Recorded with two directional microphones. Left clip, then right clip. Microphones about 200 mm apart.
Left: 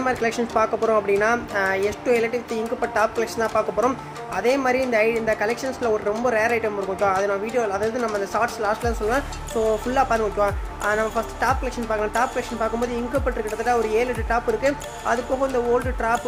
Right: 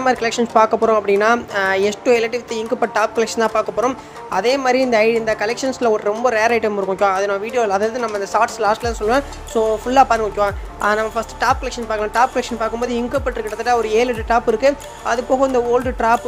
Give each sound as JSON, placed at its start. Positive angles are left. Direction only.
{"t": 0.0, "sound": "speech", "side_deg": -30}